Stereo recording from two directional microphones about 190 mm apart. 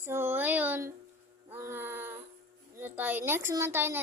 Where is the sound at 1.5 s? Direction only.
15° right (ahead or behind).